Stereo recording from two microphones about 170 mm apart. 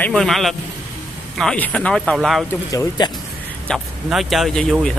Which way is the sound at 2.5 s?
20° left (ahead or behind).